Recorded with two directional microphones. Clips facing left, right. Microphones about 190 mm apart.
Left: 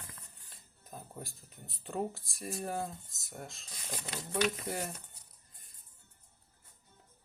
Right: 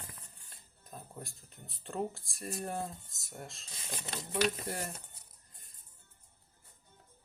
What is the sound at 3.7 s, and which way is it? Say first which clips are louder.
Speech: left 1 dB; 25° right (ahead or behind).